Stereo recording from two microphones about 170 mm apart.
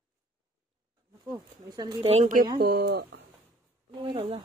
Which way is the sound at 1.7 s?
25° right (ahead or behind).